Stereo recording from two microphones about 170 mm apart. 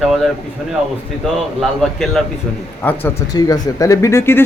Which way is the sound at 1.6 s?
Centre (ahead or behind).